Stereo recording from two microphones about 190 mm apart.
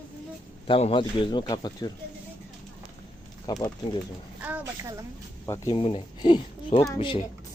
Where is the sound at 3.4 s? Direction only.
20° left (ahead or behind).